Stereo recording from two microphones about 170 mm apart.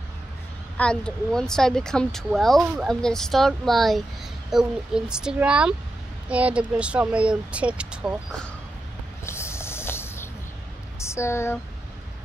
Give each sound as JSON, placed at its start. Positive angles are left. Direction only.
{"t": 0.7, "sound": "speech", "side_deg": 5}
{"t": 9.2, "sound": "a sound", "side_deg": 15}
{"t": 11.0, "sound": "speech", "side_deg": 15}